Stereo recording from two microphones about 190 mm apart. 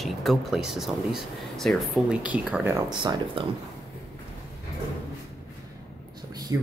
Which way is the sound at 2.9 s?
25° right (ahead or behind).